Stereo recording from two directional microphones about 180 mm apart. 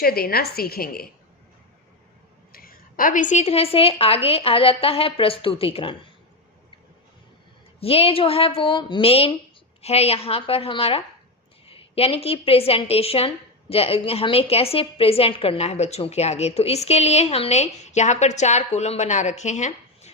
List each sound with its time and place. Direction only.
0.0 s a woman's voice: 55° left (ahead or behind)
2.5 s a woman's voice: 55° left (ahead or behind); by 6.0 s 30° left (ahead or behind)
7.8 s a woman's voice: 30° left (ahead or behind)